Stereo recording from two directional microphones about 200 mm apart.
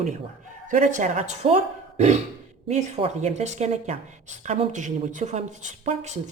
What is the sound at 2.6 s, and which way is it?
Speech, 35° right (ahead or behind).